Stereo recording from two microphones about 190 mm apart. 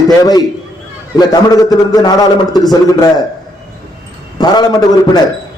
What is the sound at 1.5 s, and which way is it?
Speech, 20° left (ahead or behind).